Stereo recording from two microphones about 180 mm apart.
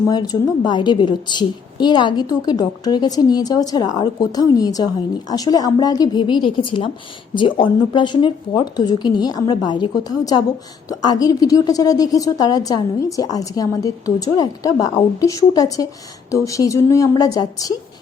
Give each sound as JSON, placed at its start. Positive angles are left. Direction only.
{"t": 0.1, "sound": "a woman's voice", "side_deg": 20}